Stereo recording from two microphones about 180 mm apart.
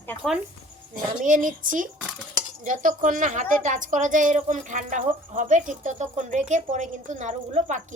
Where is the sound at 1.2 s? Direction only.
45° right (ahead or behind).